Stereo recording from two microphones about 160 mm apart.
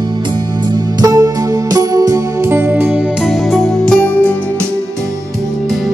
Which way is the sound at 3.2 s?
Centre (ahead or behind).